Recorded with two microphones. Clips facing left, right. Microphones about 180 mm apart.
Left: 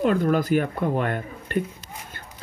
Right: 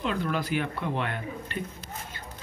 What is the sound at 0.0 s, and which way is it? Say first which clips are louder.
Speech: left 8 dB; 45° left (ahead or behind).